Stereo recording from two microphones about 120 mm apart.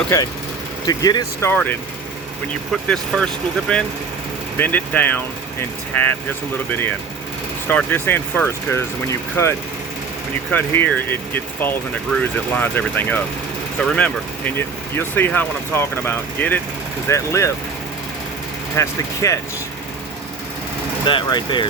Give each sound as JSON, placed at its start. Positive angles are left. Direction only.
{"t": 0.1, "sound": "speech", "side_deg": 20}
{"t": 0.9, "sound": "speech", "side_deg": 35}
{"t": 1.4, "sound": "speech", "side_deg": 15}
{"t": 2.9, "sound": "speech", "side_deg": 5}
{"t": 18.8, "sound": "speech", "side_deg": 25}
{"t": 21.1, "sound": "speech", "side_deg": 40}